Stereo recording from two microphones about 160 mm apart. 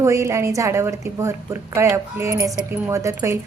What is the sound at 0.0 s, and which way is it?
Speech, 20° right (ahead or behind).